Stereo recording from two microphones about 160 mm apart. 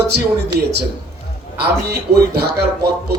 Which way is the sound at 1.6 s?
85° right.